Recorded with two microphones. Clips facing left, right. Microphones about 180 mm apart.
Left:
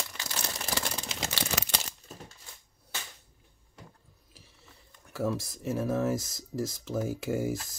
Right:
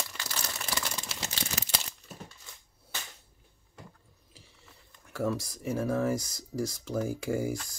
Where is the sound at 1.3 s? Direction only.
70° left (ahead or behind).